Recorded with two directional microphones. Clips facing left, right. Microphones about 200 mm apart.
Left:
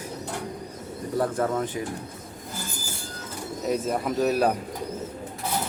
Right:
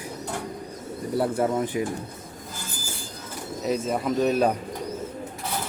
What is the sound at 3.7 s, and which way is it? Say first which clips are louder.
Speech: right 1 dB; centre (ahead or behind).